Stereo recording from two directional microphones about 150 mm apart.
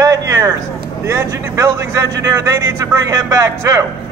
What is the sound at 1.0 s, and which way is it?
A man's voice, 20° right (ahead or behind).